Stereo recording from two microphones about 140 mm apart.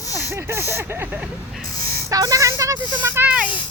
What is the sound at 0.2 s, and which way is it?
Speech, 20° right (ahead or behind).